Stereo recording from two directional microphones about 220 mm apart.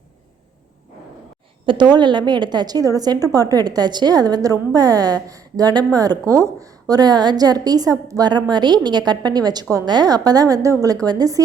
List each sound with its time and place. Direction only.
1.6 s a woman's voice: 20° right (ahead or behind)